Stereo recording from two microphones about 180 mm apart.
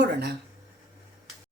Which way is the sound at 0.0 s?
65° right (ahead or behind).